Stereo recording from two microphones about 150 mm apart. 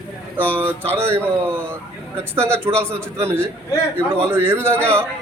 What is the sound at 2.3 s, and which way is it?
A man's voice, 15° right (ahead or behind).